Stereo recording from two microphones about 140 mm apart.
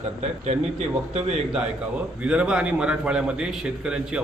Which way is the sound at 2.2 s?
5° right (ahead or behind).